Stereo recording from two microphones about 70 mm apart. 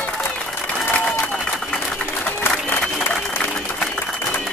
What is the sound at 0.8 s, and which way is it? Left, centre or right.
Applause, left.